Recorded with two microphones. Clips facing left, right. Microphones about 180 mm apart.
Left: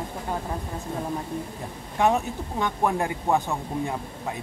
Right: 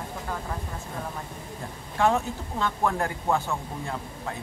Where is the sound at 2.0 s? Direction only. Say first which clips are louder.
Left 1 dB; 15° left (ahead or behind).